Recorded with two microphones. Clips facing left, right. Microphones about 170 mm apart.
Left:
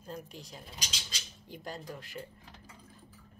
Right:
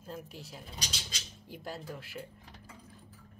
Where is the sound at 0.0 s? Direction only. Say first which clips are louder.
Even; 5° right (ahead or behind).